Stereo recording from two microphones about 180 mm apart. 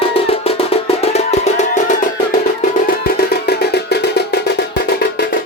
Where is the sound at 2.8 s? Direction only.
60° left (ahead or behind).